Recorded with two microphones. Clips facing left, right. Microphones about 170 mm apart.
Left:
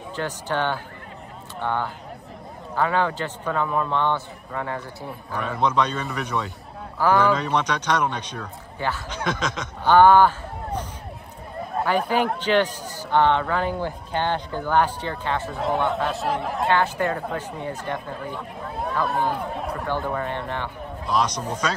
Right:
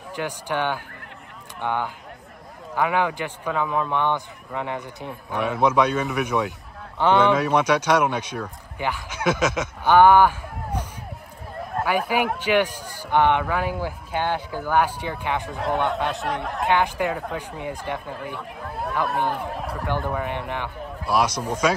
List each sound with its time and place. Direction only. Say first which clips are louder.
0.1 s a man's voice: even; 10° right (ahead or behind)
3.9 s a man's voice: even; 15° right (ahead or behind)
7.0 s speech: right 1 dB; 20° right (ahead or behind)
7.3 s a man's voice: right 4 dB; 10° right (ahead or behind)
11.6 s a sound: left 1 dB; centre (ahead or behind)
11.9 s a man's voice: left 1 dB; 10° right (ahead or behind)
15.5 s speech: left 1 dB; centre (ahead or behind)
16.6 s a man's voice: right 1 dB; 15° right (ahead or behind); by 20.2 s centre (ahead or behind)
20.2 s a man's voice: even; 15° right (ahead or behind)